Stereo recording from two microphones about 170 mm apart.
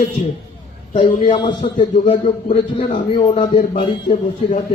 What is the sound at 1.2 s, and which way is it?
A man's voice, 30° left (ahead or behind).